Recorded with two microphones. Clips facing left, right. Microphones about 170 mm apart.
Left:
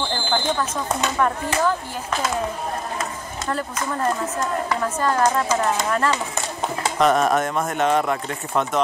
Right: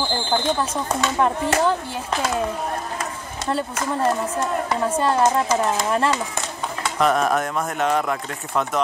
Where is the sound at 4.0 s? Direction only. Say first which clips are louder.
Right 2 dB; 25° right (ahead or behind).